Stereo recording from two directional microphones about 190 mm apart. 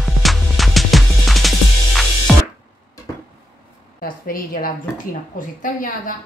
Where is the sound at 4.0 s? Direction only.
50° left (ahead or behind).